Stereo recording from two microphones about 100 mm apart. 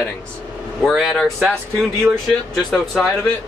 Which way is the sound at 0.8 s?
Centre (ahead or behind).